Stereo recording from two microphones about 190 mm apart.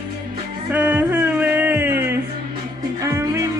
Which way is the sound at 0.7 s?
5° right (ahead or behind).